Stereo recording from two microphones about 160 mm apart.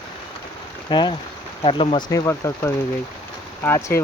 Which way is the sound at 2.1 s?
20° left (ahead or behind).